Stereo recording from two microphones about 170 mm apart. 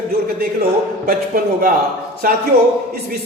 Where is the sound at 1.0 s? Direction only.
60° right (ahead or behind).